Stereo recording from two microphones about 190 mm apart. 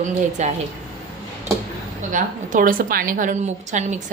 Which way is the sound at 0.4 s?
40° right (ahead or behind).